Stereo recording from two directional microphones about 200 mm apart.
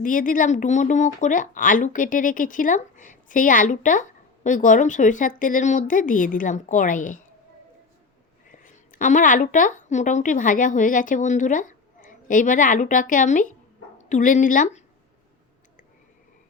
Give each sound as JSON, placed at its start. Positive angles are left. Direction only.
{"t": 0.0, "sound": "a woman's voice", "side_deg": 40}
{"t": 8.4, "sound": "a woman's voice", "side_deg": 40}